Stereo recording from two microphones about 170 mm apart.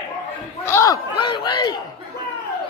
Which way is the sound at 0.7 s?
20° left (ahead or behind).